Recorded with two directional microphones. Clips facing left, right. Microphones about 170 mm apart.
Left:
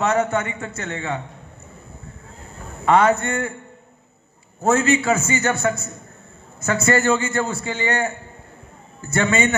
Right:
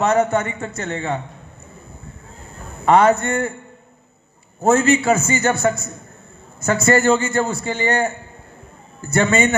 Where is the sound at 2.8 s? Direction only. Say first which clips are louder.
Right 2 dB; 40° right (ahead or behind).